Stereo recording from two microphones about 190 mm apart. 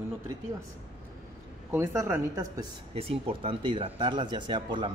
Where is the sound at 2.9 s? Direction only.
30° right (ahead or behind).